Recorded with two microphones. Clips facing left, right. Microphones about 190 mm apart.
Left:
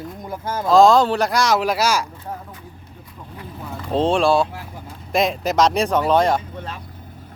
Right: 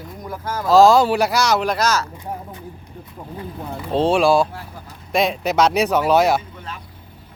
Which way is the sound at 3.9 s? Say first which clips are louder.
Right 1 dB; centre (ahead or behind).